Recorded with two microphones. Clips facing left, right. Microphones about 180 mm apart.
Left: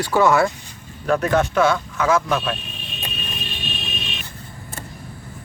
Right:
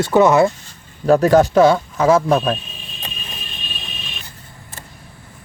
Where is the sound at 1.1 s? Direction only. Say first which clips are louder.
Right 7 dB; 35° right (ahead or behind).